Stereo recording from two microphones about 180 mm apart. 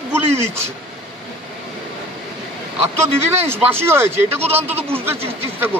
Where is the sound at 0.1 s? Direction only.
15° right (ahead or behind).